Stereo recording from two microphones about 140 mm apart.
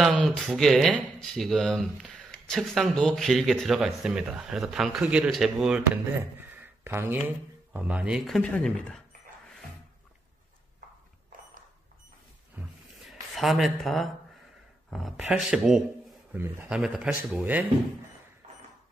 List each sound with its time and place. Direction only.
0.0 s speech: centre (ahead or behind)
6.6 s speech: 15° right (ahead or behind); by 9.0 s 5° left (ahead or behind)
13.3 s speech: centre (ahead or behind)
18.4 s a sound: 50° right (ahead or behind)